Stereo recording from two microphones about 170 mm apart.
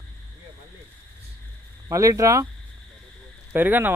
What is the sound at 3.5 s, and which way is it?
Speech, 10° right (ahead or behind).